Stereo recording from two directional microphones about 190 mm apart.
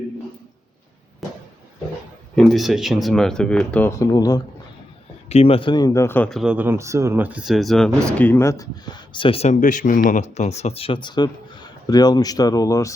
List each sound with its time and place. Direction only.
2.3 s speech: centre (ahead or behind); by 4.4 s 20° left (ahead or behind)
5.3 s speech: 30° left (ahead or behind)